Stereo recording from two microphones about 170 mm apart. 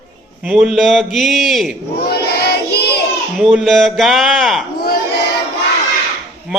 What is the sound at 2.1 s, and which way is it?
Child singing, 70° left (ahead or behind).